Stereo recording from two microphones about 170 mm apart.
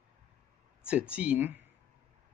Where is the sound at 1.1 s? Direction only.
10° right (ahead or behind).